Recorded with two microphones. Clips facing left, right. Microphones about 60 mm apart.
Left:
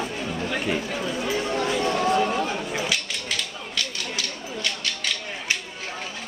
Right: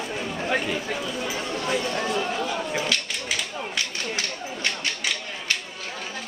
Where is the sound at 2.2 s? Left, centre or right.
Centre.